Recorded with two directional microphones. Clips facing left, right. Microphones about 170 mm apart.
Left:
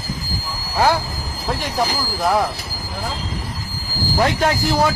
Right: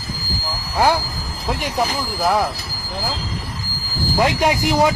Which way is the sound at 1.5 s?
Centre (ahead or behind).